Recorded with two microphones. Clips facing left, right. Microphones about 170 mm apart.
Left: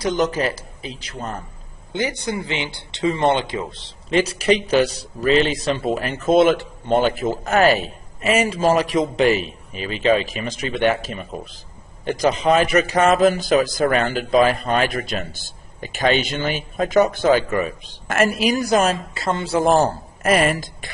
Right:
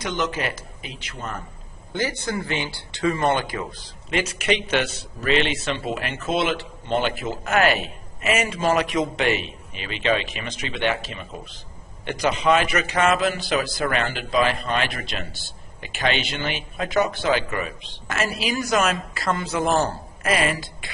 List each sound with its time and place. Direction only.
0.0 s speech: 40° left (ahead or behind)
1.9 s a man's voice: 20° left (ahead or behind); by 20.9 s 45° left (ahead or behind)